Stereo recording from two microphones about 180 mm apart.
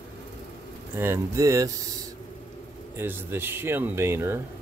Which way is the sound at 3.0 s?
15° right (ahead or behind).